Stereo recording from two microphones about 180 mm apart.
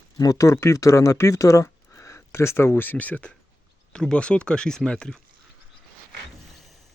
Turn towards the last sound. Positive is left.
turn(degrees=5)  # may be behind; listen again after turning